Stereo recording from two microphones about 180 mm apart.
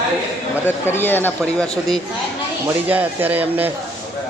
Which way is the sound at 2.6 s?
10° right (ahead or behind).